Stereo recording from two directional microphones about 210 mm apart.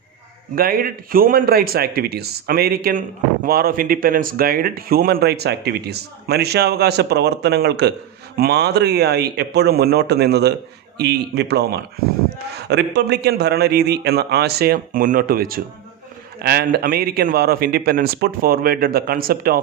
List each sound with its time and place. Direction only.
0.5 s speech: 45° right (ahead or behind)